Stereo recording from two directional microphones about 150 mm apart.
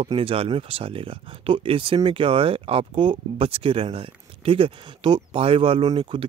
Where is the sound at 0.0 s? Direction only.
35° right (ahead or behind).